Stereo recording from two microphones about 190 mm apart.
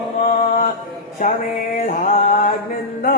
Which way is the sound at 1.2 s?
40° left (ahead or behind).